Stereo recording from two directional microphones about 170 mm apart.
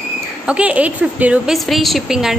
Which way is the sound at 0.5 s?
5° right (ahead or behind).